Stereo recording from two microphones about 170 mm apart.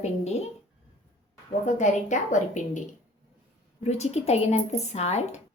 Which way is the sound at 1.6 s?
45° left (ahead or behind).